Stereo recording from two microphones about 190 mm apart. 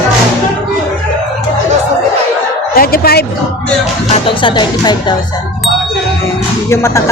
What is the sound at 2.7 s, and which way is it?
Speech, 50° left (ahead or behind).